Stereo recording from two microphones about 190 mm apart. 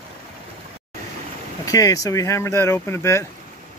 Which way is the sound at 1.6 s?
20° left (ahead or behind).